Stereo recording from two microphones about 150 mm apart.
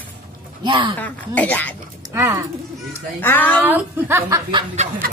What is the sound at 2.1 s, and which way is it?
Speech, 15° right (ahead or behind).